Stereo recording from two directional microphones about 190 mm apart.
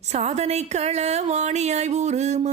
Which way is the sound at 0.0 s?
35° right (ahead or behind).